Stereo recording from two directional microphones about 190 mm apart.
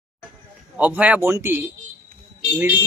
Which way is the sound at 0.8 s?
5° right (ahead or behind).